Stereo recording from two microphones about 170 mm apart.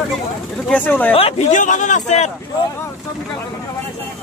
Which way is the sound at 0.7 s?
10° left (ahead or behind).